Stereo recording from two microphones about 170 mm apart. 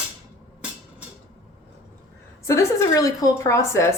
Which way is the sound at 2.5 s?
15° left (ahead or behind).